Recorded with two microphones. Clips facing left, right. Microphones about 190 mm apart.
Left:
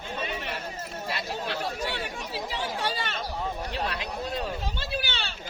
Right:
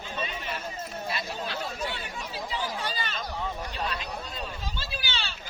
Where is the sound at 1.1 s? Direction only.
70° left (ahead or behind).